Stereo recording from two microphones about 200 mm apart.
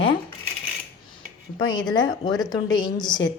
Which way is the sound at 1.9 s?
20° left (ahead or behind).